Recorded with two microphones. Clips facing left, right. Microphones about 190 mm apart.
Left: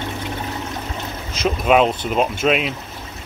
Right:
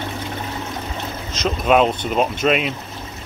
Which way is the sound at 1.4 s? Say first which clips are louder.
Even; 5° left (ahead or behind).